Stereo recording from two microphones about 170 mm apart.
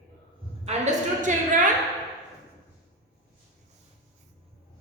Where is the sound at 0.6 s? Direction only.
45° right (ahead or behind).